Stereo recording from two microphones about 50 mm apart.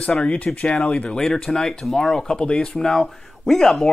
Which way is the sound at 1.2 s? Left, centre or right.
Centre.